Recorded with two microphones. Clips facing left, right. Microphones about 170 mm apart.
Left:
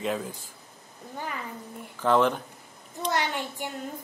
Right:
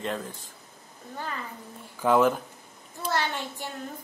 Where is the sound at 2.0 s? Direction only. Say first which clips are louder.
Right 1 dB; 10° right (ahead or behind).